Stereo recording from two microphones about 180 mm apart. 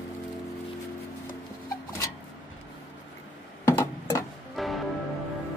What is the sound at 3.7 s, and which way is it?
Tick-tock, 15° left (ahead or behind).